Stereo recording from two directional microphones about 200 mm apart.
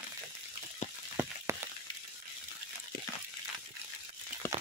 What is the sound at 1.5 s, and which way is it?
Frying, 15° right (ahead or behind).